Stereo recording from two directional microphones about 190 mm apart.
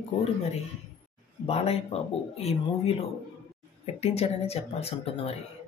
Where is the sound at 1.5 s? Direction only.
35° left (ahead or behind).